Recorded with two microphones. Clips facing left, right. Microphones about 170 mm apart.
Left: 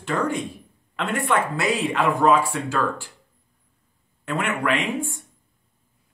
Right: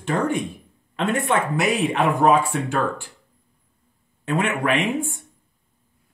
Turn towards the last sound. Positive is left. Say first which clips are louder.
# right 2 dB
turn(degrees=-20)  # may be behind; listen again after turning